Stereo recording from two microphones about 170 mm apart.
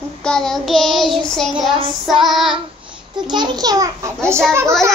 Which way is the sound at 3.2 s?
25° right (ahead or behind).